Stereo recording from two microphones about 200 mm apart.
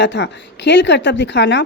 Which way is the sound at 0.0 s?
60° left (ahead or behind).